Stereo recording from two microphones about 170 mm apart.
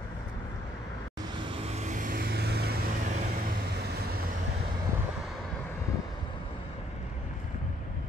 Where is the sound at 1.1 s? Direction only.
25° right (ahead or behind); by 4.2 s 70° right (ahead or behind).